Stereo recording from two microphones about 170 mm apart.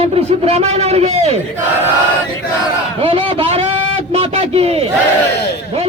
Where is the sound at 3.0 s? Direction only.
35° right (ahead or behind).